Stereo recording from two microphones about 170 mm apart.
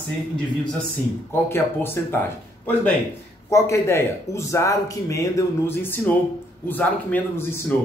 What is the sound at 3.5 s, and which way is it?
Speech, 15° left (ahead or behind).